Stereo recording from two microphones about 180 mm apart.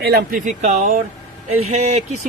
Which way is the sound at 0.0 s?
55° right (ahead or behind).